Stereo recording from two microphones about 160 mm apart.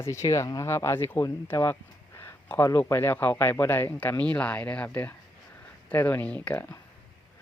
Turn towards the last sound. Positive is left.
turn(degrees=10)  # may be behind; listen again after turning